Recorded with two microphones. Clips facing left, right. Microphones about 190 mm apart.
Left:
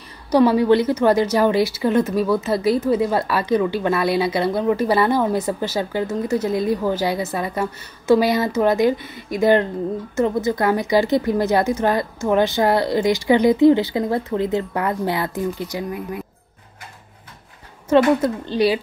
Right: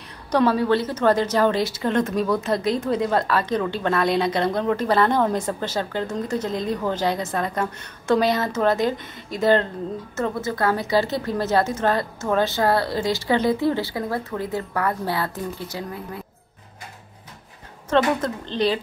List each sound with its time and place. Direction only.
0.3 s a woman's voice: 10° left (ahead or behind)
17.8 s a woman's voice: 10° left (ahead or behind)